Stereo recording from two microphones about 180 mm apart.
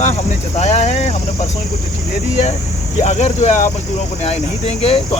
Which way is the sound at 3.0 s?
40° left (ahead or behind).